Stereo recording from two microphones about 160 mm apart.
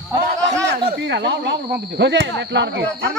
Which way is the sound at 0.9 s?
90° right.